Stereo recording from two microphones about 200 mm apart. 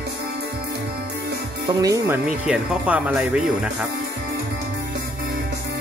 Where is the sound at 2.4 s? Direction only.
5° right (ahead or behind).